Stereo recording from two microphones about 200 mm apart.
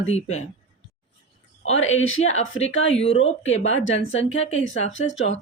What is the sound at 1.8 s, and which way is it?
Speech, 85° left.